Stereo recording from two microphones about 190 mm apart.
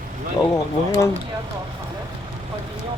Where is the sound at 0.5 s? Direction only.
15° left (ahead or behind).